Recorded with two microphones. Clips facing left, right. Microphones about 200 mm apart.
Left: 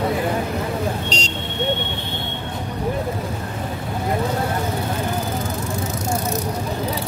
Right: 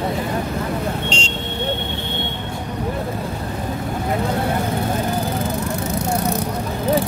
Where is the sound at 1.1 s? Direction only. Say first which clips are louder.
Right 1 dB; 40° left (ahead or behind).